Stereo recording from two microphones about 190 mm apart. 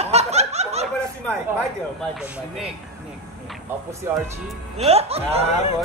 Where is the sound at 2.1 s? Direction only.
5° right (ahead or behind).